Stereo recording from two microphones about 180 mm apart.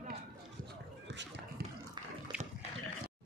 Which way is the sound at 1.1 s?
80° right.